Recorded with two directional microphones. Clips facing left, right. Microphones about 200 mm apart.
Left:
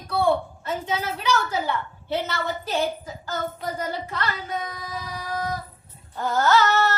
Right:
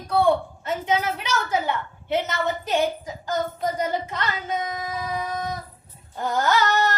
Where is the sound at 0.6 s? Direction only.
20° right (ahead or behind).